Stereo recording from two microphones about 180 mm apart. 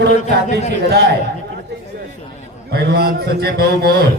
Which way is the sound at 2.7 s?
60° right (ahead or behind).